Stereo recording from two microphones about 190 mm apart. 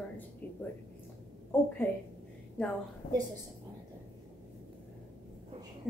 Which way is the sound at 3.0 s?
50° left (ahead or behind).